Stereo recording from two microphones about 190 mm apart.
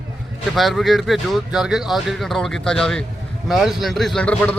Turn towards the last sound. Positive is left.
turn(degrees=5)  # may be behind; listen again after turning